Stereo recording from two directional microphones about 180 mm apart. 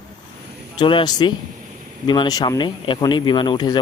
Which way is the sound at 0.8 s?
25° left (ahead or behind).